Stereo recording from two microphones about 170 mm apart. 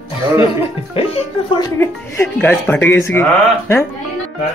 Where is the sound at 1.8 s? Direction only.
15° left (ahead or behind).